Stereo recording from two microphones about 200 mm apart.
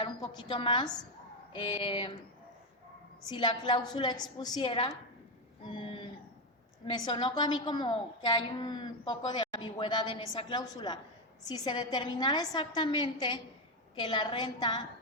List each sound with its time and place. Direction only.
0.4 s a woman's voice: 25° left (ahead or behind)
3.2 s a woman's voice: 20° left (ahead or behind)
5.6 s a sound: 25° left (ahead or behind)
6.8 s a woman's voice: 20° left (ahead or behind)